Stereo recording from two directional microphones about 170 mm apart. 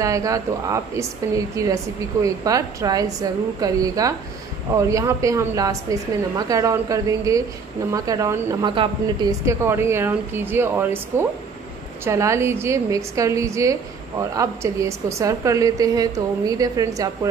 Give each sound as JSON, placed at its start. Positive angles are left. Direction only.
{"t": 0.0, "sound": "a woman's voice", "side_deg": -20}